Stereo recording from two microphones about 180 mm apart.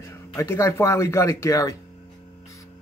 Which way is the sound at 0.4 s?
15° left (ahead or behind).